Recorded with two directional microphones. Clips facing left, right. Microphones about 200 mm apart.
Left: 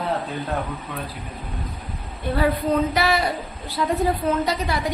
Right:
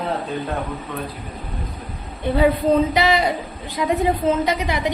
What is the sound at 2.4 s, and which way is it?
A woman's voice, 20° right (ahead or behind).